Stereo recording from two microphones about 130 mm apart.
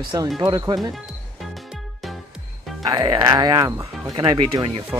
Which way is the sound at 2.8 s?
30° right (ahead or behind).